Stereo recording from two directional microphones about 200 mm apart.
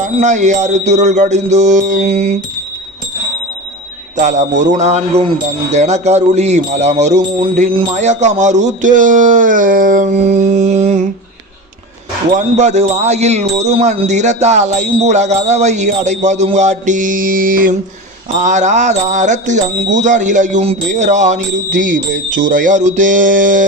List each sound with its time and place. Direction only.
0.0 s speech: 35° right (ahead or behind)
4.2 s speech: 35° right (ahead or behind)
12.3 s speech: 35° right (ahead or behind)